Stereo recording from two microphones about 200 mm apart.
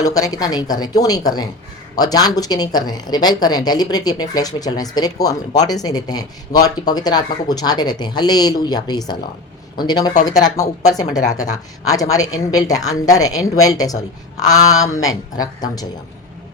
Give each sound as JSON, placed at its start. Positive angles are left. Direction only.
{"t": 0.0, "sound": "a woman's voice", "side_deg": 20}
{"t": 11.9, "sound": "speech", "side_deg": 15}